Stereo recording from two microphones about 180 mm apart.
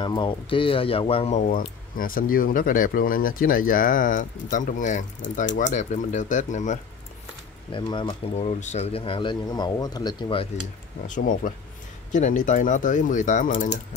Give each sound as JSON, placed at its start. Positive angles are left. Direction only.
{"t": 0.0, "sound": "speech", "side_deg": 25}
{"t": 1.5, "sound": "speech", "side_deg": 50}
{"t": 7.7, "sound": "speech", "side_deg": 25}
{"t": 11.1, "sound": "speech", "side_deg": 45}